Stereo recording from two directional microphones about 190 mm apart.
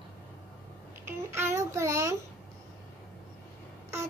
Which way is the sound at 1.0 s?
10° right (ahead or behind).